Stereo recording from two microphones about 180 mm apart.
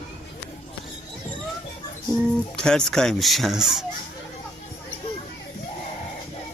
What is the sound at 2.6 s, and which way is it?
Speech, 5° left (ahead or behind).